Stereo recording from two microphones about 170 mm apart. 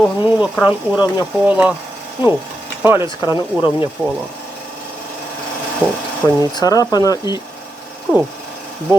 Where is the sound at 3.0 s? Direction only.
25° left (ahead or behind).